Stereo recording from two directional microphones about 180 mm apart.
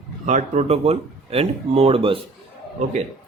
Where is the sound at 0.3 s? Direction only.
40° right (ahead or behind).